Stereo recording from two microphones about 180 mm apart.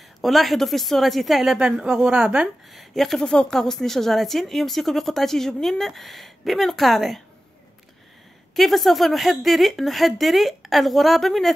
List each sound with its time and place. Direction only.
0.2 s a woman's voice: centre (ahead or behind)
8.5 s a woman's voice: centre (ahead or behind)